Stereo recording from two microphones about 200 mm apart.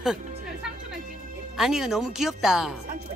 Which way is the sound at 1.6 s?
Centre (ahead or behind).